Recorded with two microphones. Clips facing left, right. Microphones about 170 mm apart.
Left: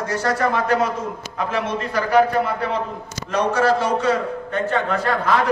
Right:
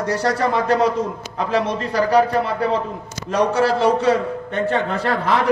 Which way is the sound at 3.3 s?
30° right (ahead or behind).